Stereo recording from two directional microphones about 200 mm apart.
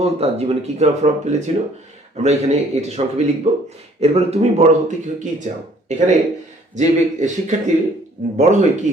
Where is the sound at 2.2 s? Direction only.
35° right (ahead or behind).